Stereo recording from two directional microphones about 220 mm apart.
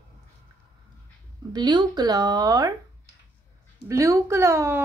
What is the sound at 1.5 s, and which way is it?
A woman's voice, 20° right (ahead or behind).